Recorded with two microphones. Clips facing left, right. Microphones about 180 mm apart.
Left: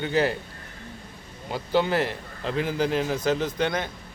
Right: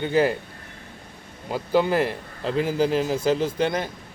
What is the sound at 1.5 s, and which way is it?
Speech, 5° right (ahead or behind).